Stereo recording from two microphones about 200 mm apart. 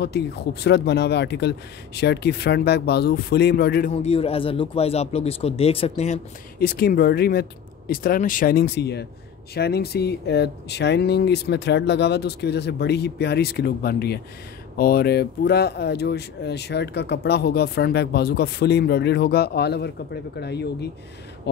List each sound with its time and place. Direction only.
0.0 s speech: 55° left (ahead or behind)
3.9 s speech: 30° left (ahead or behind)
6.6 s speech: 50° left (ahead or behind)